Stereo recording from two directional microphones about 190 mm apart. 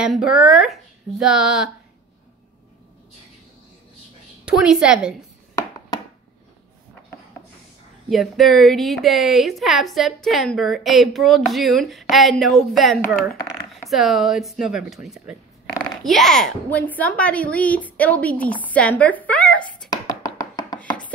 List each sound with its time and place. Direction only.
0.0 s a woman's voice: 5° right (ahead or behind)
4.5 s a woman's voice: 5° right (ahead or behind)
8.1 s a woman's voice: centre (ahead or behind)
13.8 s a woman's voice: centre (ahead or behind)
15.7 s a sound: 20° left (ahead or behind)
16.0 s a woman's voice: centre (ahead or behind)
19.9 s chopping: 20° left (ahead or behind)